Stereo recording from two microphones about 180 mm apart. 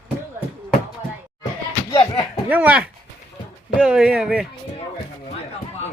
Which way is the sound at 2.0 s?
35° left (ahead or behind).